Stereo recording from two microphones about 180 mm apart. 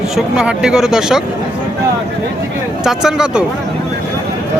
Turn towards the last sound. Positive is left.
turn(degrees=-5)  # may be behind; listen again after turning